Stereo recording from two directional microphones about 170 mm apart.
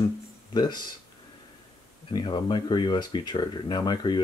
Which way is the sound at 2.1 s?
25° left (ahead or behind).